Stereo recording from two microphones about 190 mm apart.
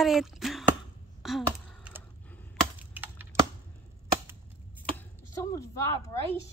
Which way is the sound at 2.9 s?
10° right (ahead or behind).